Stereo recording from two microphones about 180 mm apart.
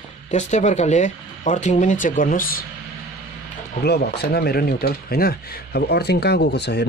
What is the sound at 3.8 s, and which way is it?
Speech, 65° left (ahead or behind).